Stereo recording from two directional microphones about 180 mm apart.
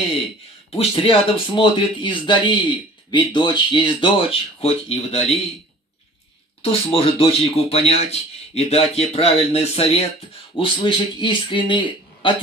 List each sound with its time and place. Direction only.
0.7 s speech: 30° left (ahead or behind)
6.6 s speech: 35° left (ahead or behind)